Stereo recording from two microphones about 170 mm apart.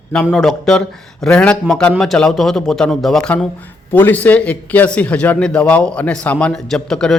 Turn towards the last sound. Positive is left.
turn(degrees=5)  # may be behind; listen again after turning